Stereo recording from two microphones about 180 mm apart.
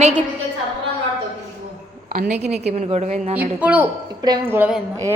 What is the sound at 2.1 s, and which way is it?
A woman's voice, 45° right (ahead or behind).